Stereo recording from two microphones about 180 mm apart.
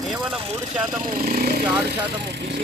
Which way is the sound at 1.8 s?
70° right (ahead or behind).